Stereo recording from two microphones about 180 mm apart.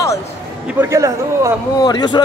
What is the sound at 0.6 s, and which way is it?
Speech, 15° right (ahead or behind).